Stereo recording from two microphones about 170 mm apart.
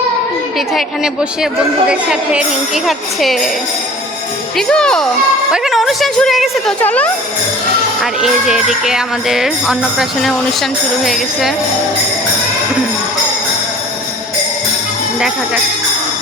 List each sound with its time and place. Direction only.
0.7 s jingle bell: centre (ahead or behind)
4.5 s jingle bell: 5° left (ahead or behind)
8.2 s jingle bell: centre (ahead or behind)